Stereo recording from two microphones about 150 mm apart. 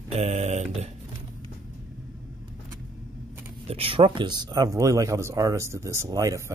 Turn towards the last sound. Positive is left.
turn(degrees=-20)  # may be behind; listen again after turning